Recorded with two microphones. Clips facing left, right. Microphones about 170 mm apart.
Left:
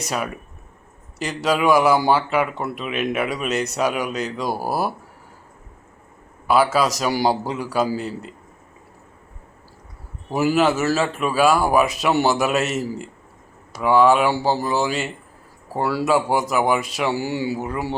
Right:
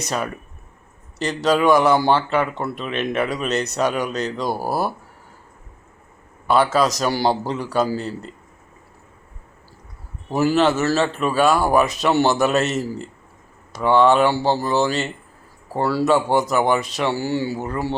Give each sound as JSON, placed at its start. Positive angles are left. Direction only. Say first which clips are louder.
{"t": 0.0, "sound": "a man's voice", "louder": "right 1 dB", "side_deg": 5}
{"t": 6.5, "sound": "a man's voice", "louder": "even", "side_deg": 5}
{"t": 10.2, "sound": "a man's voice", "louder": "right 1 dB", "side_deg": 5}